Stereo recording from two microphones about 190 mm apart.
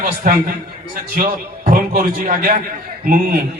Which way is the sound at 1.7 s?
50° right (ahead or behind).